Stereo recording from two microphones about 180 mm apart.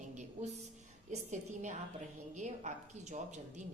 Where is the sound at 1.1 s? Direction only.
40° right (ahead or behind).